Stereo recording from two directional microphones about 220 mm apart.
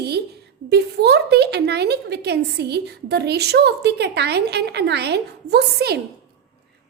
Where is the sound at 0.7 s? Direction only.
50° right (ahead or behind).